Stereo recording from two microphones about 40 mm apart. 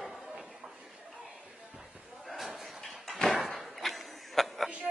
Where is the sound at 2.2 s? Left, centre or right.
Centre.